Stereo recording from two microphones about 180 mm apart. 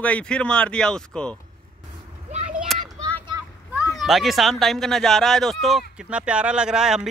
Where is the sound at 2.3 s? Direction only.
40° right (ahead or behind).